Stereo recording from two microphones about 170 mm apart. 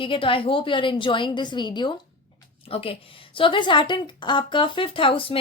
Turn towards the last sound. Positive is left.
turn(degrees=30)  # may be behind; listen again after turning